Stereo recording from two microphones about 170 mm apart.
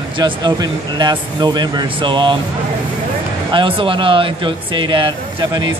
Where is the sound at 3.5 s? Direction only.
30° right (ahead or behind).